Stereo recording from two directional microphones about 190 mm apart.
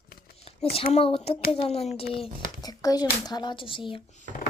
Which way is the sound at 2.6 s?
20° left (ahead or behind).